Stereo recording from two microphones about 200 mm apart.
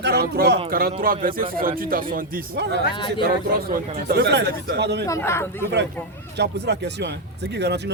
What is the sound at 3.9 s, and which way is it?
Speech, 55° right (ahead or behind).